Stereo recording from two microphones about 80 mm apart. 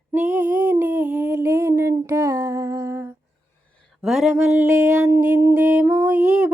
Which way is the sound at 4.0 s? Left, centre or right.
Centre.